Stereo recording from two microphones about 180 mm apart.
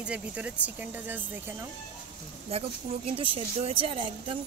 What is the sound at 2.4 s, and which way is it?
A woman's voice, 35° right (ahead or behind).